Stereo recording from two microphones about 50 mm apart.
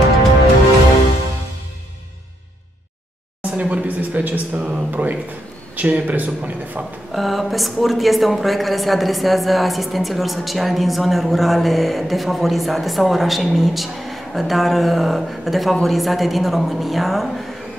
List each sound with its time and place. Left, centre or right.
3.4 s a sound: right
5.8 s speech: right
7.1 s a woman's voice: centre